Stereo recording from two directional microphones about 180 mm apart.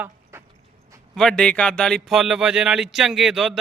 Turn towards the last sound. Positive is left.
turn(degrees=0)  # may be behind; listen again after turning